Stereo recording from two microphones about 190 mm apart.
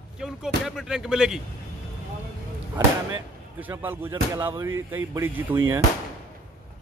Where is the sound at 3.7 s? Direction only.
15° right (ahead or behind).